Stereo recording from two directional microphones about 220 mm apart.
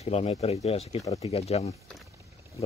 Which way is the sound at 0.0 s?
30° left (ahead or behind).